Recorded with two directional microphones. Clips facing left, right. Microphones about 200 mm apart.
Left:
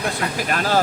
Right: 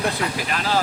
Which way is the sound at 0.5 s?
45° left (ahead or behind).